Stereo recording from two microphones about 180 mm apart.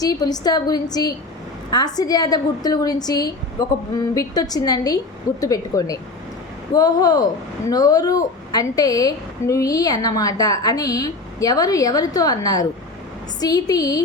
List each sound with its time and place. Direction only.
0.0 s a woman's voice: 20° left (ahead or behind)